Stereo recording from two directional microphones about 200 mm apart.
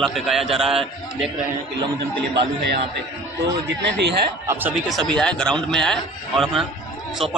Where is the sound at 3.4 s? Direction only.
60° right (ahead or behind).